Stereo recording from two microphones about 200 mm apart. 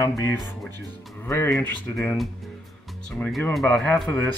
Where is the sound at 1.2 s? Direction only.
10° left (ahead or behind).